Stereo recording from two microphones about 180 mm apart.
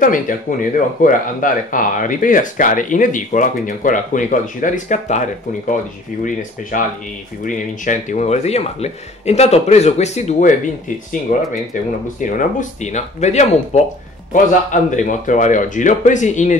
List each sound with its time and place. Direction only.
0.0 s speech: 45° left (ahead or behind)
6.7 s speech: 50° left (ahead or behind)
11.3 s speech: 50° left (ahead or behind)